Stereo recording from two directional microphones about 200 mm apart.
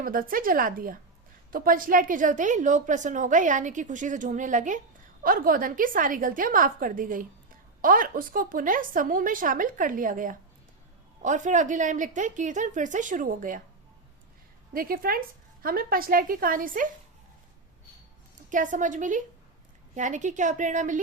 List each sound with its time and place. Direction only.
0.0 s a woman's voice: 45° right (ahead or behind)
14.7 s a woman's voice: 45° right (ahead or behind)
18.3 s a woman's voice: 40° right (ahead or behind)